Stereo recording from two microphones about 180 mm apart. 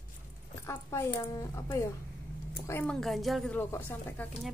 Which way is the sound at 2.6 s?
10° left (ahead or behind).